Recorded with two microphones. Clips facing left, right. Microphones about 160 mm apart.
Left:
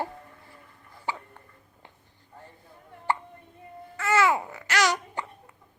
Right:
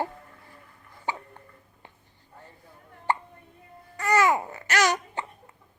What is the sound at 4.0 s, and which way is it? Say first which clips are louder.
Babbling: right 1 dB; 15° right (ahead or behind).